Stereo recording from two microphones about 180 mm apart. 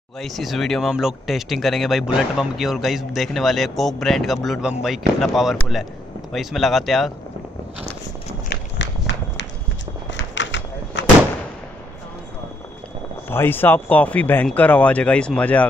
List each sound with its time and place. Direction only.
0.2 s speech: centre (ahead or behind)
10.1 s a sound: 85° left
13.3 s speech: 10° left (ahead or behind)